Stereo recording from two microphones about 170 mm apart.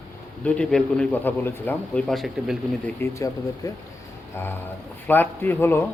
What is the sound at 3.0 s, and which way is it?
A man's voice, 15° left (ahead or behind).